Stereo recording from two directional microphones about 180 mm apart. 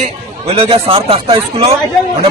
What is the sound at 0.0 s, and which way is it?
A man's voice, 30° right (ahead or behind).